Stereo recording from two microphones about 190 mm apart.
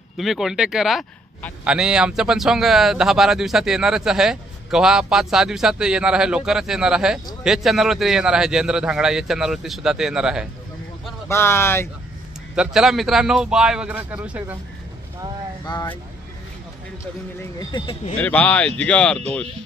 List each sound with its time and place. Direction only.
0.2 s speech: centre (ahead or behind)
11.2 s speech: 15° left (ahead or behind)
12.5 s speech: centre (ahead or behind)
15.6 s speech: 20° left (ahead or behind)
17.4 s speech: 20° left (ahead or behind)
18.2 s speech: 5° left (ahead or behind)